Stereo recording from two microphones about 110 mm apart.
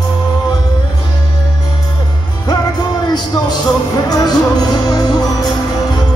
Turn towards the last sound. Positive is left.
turn(degrees=35)  # may be behind; listen again after turning